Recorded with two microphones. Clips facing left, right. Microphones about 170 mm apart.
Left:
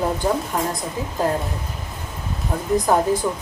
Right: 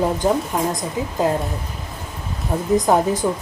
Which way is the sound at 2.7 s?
20° right (ahead or behind).